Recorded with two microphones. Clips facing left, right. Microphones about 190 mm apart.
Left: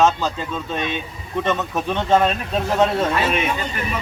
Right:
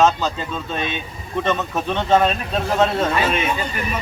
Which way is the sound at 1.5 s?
10° left (ahead or behind).